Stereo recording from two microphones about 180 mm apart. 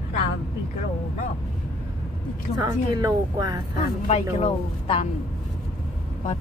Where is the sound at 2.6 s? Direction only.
20° right (ahead or behind).